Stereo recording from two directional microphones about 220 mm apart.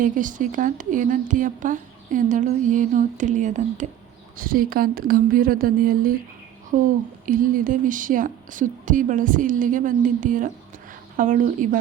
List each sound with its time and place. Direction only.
0.0 s speech: 35° right (ahead or behind)